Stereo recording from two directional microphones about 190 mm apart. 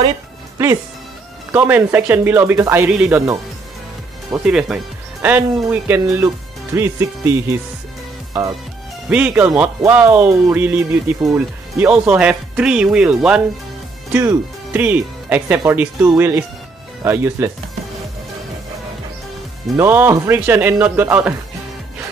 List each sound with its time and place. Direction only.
1.5 s speech: 10° right (ahead or behind)
4.5 s speech: centre (ahead or behind)
19.8 s speech: 10° right (ahead or behind)